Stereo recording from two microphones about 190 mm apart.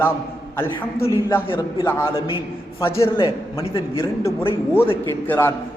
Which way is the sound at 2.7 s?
15° left (ahead or behind).